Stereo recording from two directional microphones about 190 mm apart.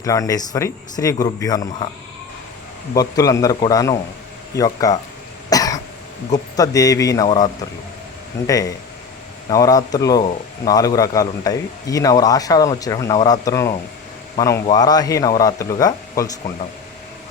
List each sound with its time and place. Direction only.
0.0 s speech: 15° left (ahead or behind)
2.9 s a man's voice: 20° left (ahead or behind)
5.5 s cough: 20° left (ahead or behind)
6.3 s a man's voice: 20° left (ahead or behind)